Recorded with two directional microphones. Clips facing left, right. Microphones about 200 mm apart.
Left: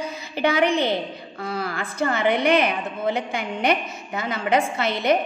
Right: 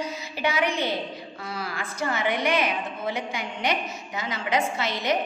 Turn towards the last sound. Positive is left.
turn(degrees=55)  # may be behind; listen again after turning